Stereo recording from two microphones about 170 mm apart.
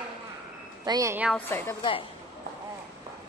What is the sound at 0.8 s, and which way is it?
Speech, 20° right (ahead or behind).